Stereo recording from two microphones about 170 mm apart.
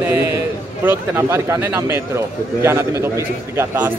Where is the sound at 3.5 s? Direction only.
10° right (ahead or behind).